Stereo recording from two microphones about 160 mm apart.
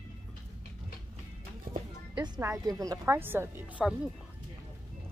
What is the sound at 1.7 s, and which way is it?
Music, 60° right (ahead or behind).